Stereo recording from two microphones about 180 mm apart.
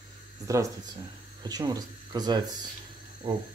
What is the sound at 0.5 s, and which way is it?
Speech, 20° right (ahead or behind).